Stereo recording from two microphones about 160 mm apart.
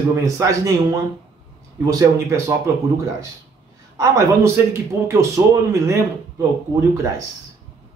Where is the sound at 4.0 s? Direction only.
15° right (ahead or behind).